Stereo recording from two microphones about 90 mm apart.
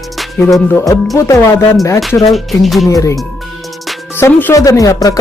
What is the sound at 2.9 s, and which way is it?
Music, 35° left (ahead or behind).